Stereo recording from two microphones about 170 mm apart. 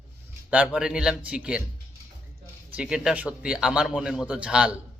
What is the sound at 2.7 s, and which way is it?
A man's voice, 5° right (ahead or behind).